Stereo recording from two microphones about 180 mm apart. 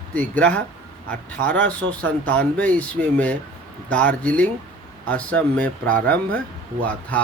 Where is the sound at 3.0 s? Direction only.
55° right (ahead or behind).